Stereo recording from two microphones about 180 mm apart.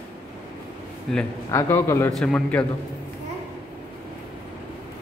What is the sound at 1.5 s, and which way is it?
Speech, 15° left (ahead or behind).